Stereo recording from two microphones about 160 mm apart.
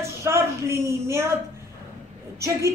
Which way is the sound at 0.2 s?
15° right (ahead or behind).